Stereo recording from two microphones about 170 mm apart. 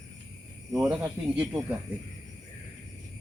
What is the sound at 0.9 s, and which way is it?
Speech, 10° right (ahead or behind).